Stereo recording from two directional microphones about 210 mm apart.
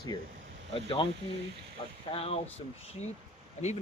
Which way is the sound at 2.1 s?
30° left (ahead or behind).